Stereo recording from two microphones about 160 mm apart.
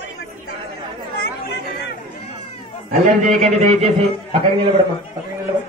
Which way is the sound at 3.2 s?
50° right (ahead or behind).